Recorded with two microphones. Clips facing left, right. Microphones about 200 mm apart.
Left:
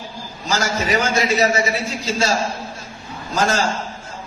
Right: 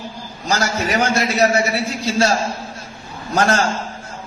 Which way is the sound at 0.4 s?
65° right (ahead or behind).